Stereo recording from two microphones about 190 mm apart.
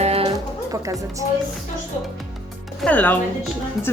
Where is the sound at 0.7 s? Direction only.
15° right (ahead or behind).